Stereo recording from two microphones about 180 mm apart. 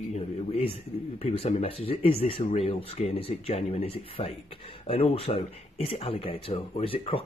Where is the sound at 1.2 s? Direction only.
35° left (ahead or behind).